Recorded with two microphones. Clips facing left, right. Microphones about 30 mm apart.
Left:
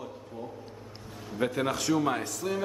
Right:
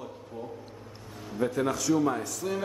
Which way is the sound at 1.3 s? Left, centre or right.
Left.